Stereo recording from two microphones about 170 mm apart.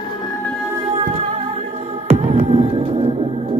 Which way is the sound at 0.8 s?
30° right (ahead or behind).